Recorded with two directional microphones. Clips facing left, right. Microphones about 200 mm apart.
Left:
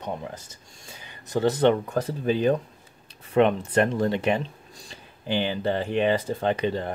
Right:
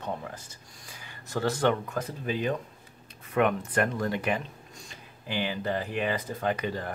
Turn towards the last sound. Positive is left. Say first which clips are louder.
# left 5 dB
turn(degrees=25)  # may be behind; listen again after turning